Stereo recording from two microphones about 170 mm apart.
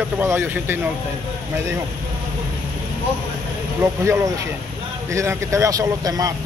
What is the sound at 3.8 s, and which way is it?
Speech, 15° right (ahead or behind).